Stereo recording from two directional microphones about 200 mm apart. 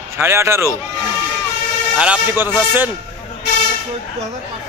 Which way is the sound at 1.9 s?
5° right (ahead or behind).